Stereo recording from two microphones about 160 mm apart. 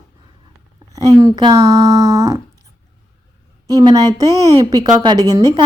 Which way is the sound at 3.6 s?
25° right (ahead or behind).